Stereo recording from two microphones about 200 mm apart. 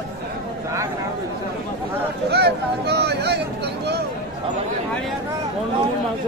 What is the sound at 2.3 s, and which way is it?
Speech, 55° right (ahead or behind).